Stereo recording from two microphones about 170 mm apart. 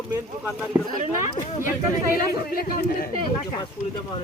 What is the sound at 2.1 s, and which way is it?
Speech, 60° left (ahead or behind).